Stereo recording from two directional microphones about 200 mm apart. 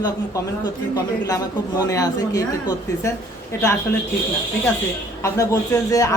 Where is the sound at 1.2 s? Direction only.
15° left (ahead or behind).